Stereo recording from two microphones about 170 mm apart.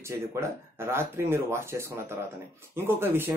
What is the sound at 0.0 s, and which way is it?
Speech, 15° right (ahead or behind).